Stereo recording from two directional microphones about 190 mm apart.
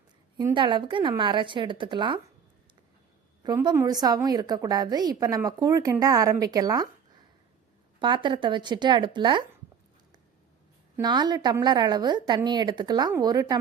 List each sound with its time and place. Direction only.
0.3 s a woman's voice: 25° right (ahead or behind)
3.4 s a woman's voice: 20° right (ahead or behind)
7.9 s a woman's voice: 25° right (ahead or behind)
11.0 s a woman's voice: 20° right (ahead or behind)